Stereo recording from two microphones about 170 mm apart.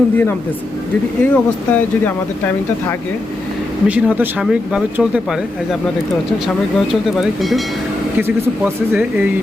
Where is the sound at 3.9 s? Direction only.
10° right (ahead or behind).